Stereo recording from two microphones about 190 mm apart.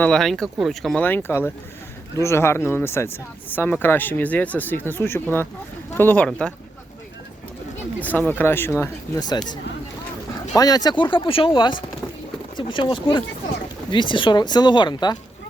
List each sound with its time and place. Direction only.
0.0 s speech: 5° left (ahead or behind)
8.0 s speech: 10° left (ahead or behind)
10.5 s speech: 20° left (ahead or behind)